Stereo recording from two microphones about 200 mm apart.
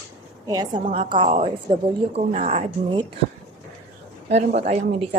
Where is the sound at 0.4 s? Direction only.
20° right (ahead or behind).